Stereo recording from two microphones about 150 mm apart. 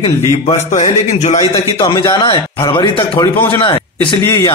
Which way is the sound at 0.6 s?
50° left (ahead or behind).